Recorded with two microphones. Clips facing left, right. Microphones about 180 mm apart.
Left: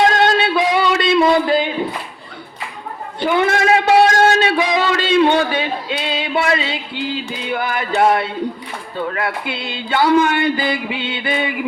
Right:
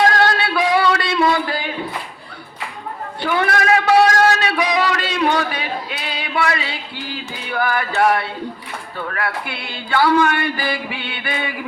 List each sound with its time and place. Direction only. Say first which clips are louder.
0.0 s music: left 2 dB; 20° left (ahead or behind)
3.2 s a sound: left 3 dB; 20° left (ahead or behind)
9.0 s speech: left 3 dB; 20° left (ahead or behind)